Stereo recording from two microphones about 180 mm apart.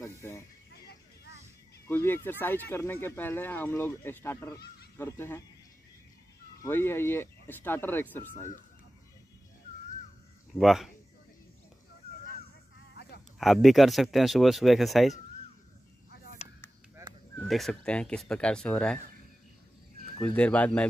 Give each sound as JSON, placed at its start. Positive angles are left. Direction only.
{"t": 0.0, "sound": "a sound", "side_deg": 15}
{"t": 1.9, "sound": "speech", "side_deg": 15}
{"t": 6.6, "sound": "speech", "side_deg": 15}
{"t": 10.5, "sound": "speech", "side_deg": 0}
{"t": 12.9, "sound": "a sound", "side_deg": 65}
{"t": 13.4, "sound": "speech", "side_deg": 0}
{"t": 16.1, "sound": "a sound", "side_deg": 55}
{"t": 17.4, "sound": "speech", "side_deg": 0}
{"t": 20.2, "sound": "speech", "side_deg": 5}